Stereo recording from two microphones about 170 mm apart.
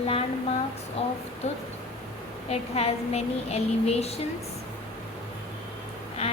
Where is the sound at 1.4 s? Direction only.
40° left (ahead or behind).